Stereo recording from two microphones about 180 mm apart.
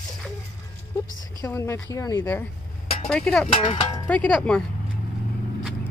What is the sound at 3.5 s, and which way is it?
Speech, 30° left (ahead or behind).